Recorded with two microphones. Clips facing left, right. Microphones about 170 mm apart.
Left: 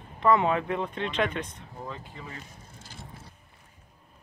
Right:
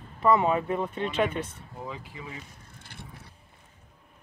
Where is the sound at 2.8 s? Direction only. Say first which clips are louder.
Even; 60° right (ahead or behind).